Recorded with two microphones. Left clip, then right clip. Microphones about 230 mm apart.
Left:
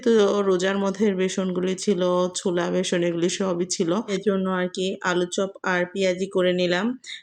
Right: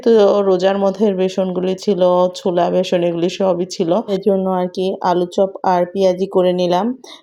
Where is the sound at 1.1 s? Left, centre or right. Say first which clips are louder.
Right 8 dB; centre.